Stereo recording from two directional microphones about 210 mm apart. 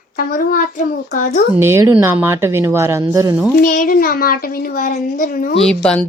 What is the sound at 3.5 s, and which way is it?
A child's voice, 40° left (ahead or behind).